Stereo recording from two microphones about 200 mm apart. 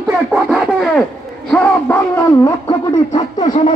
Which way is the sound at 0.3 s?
Centre (ahead or behind).